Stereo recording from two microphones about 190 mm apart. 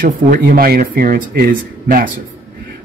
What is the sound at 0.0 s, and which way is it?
Speech, 50° right (ahead or behind).